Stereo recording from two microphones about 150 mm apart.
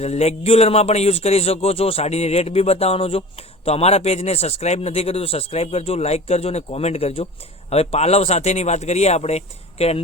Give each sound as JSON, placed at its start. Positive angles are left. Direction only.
{"t": 0.0, "sound": "speech", "side_deg": 45}